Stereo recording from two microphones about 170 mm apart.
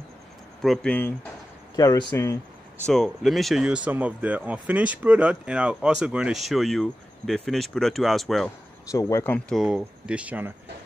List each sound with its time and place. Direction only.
0.6 s speech: 5° left (ahead or behind)
1.8 s speech: 20° left (ahead or behind)
2.9 s speech: centre (ahead or behind)
8.9 s speech: 15° left (ahead or behind)
9.6 s speech: 5° right (ahead or behind)